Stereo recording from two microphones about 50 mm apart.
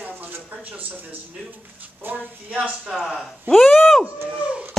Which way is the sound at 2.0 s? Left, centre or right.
Right.